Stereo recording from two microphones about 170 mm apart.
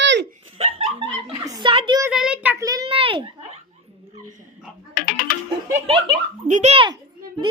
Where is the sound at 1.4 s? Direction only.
25° right (ahead or behind).